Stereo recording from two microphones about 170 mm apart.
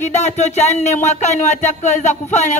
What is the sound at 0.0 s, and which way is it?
A woman's voice, 45° left (ahead or behind).